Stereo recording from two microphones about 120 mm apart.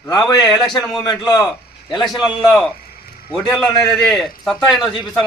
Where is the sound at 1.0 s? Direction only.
30° left (ahead or behind).